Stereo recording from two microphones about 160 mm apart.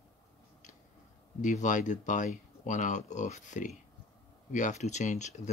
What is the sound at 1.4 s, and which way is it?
Speech, 50° left (ahead or behind).